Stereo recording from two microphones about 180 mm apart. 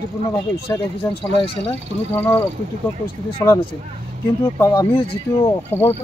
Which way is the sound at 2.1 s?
15° left (ahead or behind).